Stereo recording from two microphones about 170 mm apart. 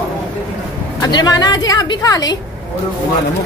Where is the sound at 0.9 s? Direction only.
25° left (ahead or behind).